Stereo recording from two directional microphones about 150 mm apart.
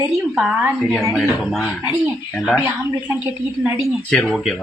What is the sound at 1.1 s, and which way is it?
Speech, centre (ahead or behind).